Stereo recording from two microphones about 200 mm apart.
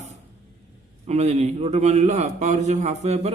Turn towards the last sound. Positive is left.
turn(degrees=-35)  # may be behind; listen again after turning